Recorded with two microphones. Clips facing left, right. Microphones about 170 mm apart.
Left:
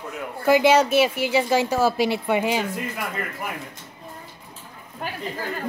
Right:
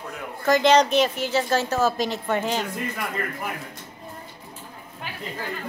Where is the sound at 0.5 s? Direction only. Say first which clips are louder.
Left 1 dB; 10° left (ahead or behind).